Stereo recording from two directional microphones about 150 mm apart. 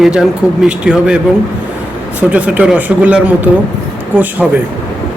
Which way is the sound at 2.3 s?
10° right (ahead or behind).